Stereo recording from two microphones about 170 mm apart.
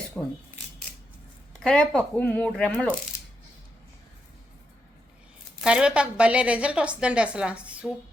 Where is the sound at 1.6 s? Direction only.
5° left (ahead or behind).